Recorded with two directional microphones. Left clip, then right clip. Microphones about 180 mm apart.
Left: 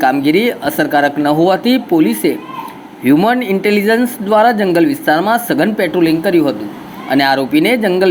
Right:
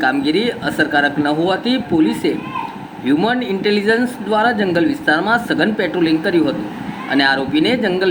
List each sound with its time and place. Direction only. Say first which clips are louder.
0.0 s speech: left 4 dB; 35° left (ahead or behind)